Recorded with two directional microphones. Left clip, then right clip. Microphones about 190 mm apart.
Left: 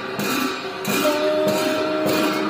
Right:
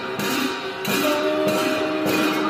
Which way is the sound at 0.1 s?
45° left (ahead or behind).